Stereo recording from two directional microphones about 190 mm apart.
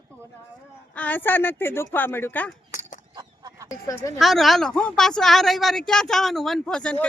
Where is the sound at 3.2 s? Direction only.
20° right (ahead or behind).